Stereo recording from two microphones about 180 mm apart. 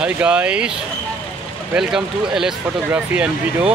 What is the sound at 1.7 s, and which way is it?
Speech, 5° right (ahead or behind).